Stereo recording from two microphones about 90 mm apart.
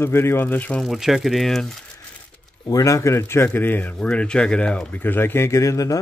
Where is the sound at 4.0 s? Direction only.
10° left (ahead or behind).